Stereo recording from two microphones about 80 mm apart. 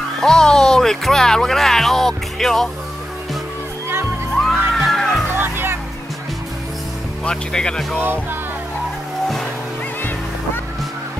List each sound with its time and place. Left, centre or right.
0.2 s speech: centre
4.5 s music: centre
5.4 s music: right
7.2 s speech: centre